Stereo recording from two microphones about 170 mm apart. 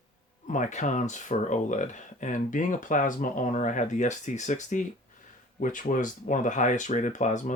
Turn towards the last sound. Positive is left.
turn(degrees=45)  # may be behind; listen again after turning